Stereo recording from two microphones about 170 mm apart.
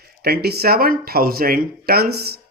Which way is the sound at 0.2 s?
70° right (ahead or behind).